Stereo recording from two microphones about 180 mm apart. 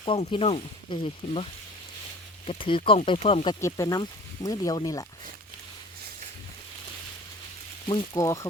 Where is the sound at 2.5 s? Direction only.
30° left (ahead or behind).